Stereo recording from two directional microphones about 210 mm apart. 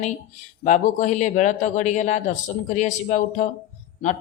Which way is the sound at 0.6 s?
35° left (ahead or behind).